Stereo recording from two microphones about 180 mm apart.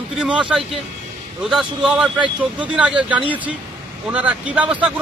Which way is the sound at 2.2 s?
30° right (ahead or behind).